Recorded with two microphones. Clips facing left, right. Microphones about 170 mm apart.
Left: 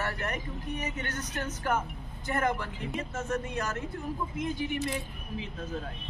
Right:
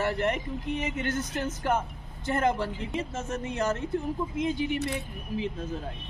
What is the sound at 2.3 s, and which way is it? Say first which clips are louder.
A man's voice: right 3 dB; 25° right (ahead or behind).